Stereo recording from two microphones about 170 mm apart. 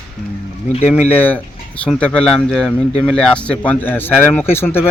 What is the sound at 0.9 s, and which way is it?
Speech, 10° left (ahead or behind).